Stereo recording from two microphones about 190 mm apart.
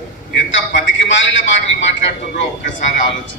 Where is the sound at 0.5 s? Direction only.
75° left (ahead or behind).